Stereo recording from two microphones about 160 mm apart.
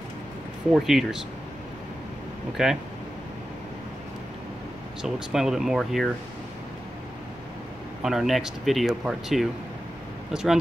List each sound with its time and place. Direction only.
0.7 s speech: centre (ahead or behind)
2.5 s speech: 5° right (ahead or behind)
5.0 s speech: centre (ahead or behind)
8.0 s speech: centre (ahead or behind)